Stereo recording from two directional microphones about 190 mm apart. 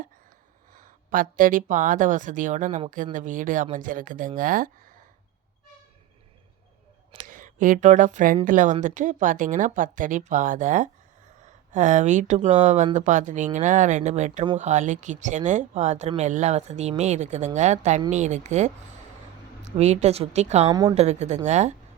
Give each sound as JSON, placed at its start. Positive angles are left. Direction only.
{"t": 0.7, "sound": "speech", "side_deg": -45}
{"t": 7.2, "sound": "speech", "side_deg": -45}
{"t": 20.7, "sound": "a woman's voice", "side_deg": -20}
{"t": 20.9, "sound": "speech", "side_deg": -35}